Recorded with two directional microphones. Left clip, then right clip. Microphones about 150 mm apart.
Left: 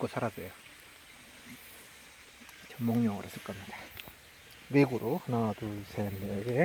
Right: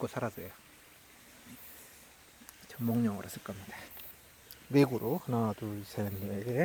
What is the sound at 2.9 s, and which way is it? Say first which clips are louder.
Speech: left 1 dB; 10° right (ahead or behind).